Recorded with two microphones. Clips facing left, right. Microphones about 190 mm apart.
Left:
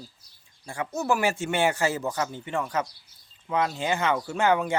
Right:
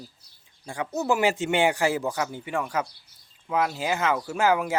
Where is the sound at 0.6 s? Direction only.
15° right (ahead or behind).